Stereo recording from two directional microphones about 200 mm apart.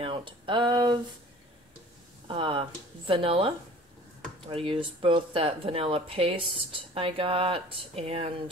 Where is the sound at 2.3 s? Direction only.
25° right (ahead or behind).